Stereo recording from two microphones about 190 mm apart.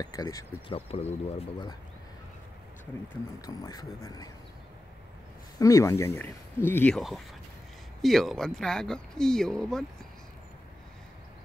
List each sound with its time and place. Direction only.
0.0 s speech: 20° left (ahead or behind)
0.7 s speech: 30° left (ahead or behind)
3.3 s speech: 20° left (ahead or behind)
5.6 s speech: 15° left (ahead or behind)